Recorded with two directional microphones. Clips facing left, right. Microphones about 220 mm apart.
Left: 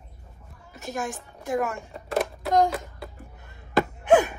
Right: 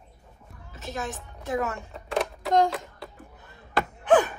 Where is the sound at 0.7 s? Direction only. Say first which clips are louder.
Left 2 dB; 15° left (ahead or behind).